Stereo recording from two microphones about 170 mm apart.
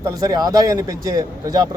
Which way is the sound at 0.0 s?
20° right (ahead or behind).